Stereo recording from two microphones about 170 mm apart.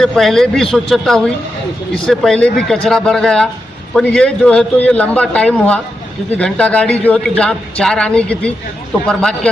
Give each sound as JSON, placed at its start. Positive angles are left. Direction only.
{"t": 0.0, "sound": "a man's voice", "side_deg": 0}